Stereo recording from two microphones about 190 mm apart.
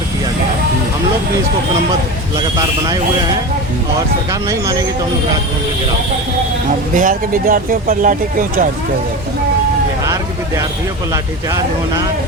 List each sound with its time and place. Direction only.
2.3 s speech: 20° right (ahead or behind)
4.3 s speech: 15° right (ahead or behind)
6.9 s speech: 45° right (ahead or behind)
11.1 s speech: 20° right (ahead or behind)